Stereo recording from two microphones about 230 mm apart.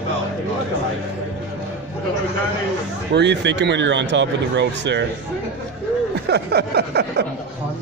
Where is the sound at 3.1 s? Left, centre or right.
Right.